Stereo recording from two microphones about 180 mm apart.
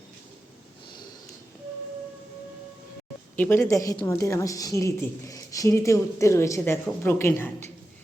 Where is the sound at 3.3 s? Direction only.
10° left (ahead or behind).